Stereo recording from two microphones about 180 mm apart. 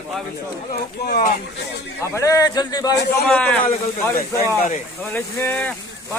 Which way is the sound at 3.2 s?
5° left (ahead or behind).